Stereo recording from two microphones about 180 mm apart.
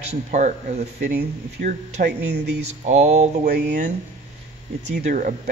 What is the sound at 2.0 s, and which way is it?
Speech, 70° right (ahead or behind).